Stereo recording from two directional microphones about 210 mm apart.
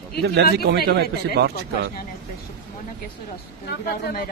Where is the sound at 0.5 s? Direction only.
50° right (ahead or behind).